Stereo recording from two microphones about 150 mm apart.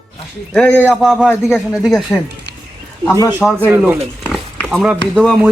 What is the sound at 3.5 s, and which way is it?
Speech, 15° right (ahead or behind).